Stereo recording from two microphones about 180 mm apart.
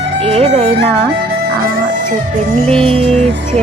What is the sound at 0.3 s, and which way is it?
Music, 35° right (ahead or behind).